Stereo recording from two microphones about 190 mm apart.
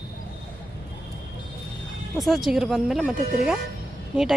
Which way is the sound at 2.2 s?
Centre (ahead or behind).